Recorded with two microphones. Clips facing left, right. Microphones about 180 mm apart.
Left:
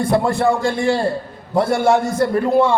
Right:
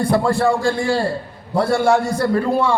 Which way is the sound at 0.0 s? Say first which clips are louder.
Even; 20° left (ahead or behind).